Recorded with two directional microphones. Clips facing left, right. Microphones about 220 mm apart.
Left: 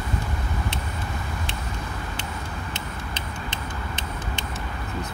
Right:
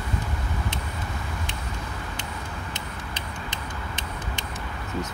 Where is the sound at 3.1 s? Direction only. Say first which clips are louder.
Left 2 dB; 15° right (ahead or behind).